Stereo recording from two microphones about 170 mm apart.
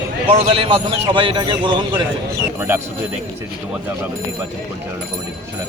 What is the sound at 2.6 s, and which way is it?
Speech, 15° right (ahead or behind).